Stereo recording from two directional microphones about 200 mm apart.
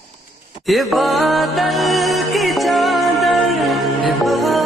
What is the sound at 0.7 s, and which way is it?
Music, centre (ahead or behind).